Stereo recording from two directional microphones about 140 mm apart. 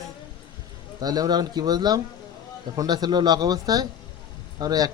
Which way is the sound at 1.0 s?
30° right (ahead or behind).